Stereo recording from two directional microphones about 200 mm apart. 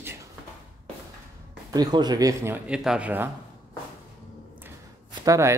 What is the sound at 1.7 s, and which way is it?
Speech, 20° right (ahead or behind).